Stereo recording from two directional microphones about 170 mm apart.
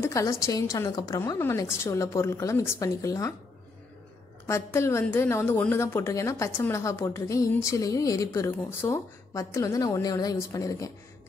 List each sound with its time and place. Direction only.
0.0 s a woman's voice: 15° left (ahead or behind)
4.5 s a woman's voice: 15° left (ahead or behind)